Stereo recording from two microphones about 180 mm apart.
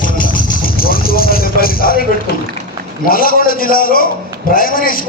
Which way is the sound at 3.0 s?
50° left (ahead or behind).